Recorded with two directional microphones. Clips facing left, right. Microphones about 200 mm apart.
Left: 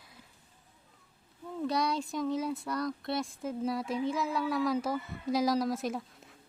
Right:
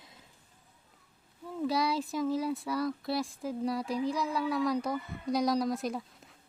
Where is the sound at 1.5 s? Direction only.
Centre (ahead or behind).